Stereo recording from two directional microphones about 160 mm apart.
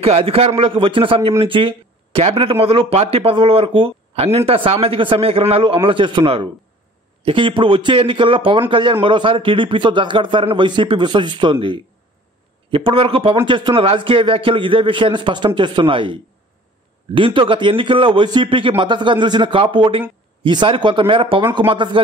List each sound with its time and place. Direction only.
0.0 s speech: 35° right (ahead or behind)
12.7 s speech: 35° right (ahead or behind)